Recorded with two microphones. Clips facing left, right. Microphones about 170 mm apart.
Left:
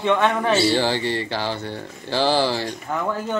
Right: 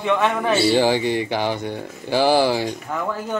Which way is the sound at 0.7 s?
15° right (ahead or behind).